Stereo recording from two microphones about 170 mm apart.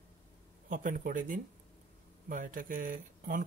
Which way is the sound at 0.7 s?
50° right (ahead or behind).